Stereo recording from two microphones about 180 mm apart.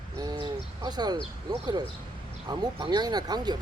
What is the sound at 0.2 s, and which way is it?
Speech, 25° right (ahead or behind).